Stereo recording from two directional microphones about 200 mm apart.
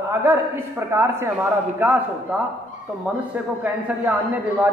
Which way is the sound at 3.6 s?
10° right (ahead or behind).